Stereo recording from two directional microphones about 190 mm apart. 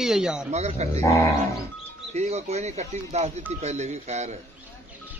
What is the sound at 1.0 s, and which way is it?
Speech, 15° left (ahead or behind).